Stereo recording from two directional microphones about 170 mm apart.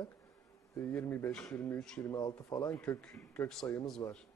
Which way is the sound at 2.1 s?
20° left (ahead or behind).